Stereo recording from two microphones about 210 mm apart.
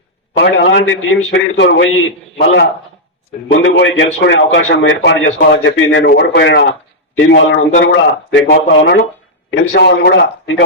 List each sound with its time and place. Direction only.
0.3 s a man's voice: 60° left (ahead or behind)